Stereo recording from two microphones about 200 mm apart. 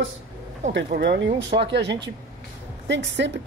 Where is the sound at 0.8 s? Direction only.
50° right (ahead or behind).